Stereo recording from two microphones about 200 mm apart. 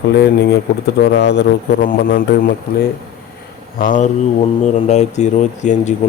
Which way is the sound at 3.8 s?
40° left (ahead or behind).